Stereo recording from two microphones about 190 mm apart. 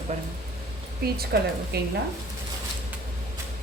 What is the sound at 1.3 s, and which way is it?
Speech, 55° right (ahead or behind).